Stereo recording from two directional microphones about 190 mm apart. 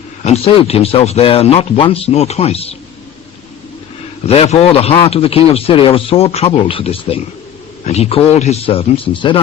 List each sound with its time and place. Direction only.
0.3 s a man's voice: 30° left (ahead or behind)
4.3 s a man's voice: 30° left (ahead or behind)